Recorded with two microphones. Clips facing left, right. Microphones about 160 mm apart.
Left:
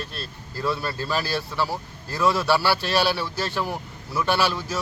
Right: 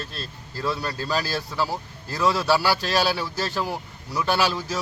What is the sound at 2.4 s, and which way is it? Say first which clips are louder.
A man's voice: even; 10° right (ahead or behind).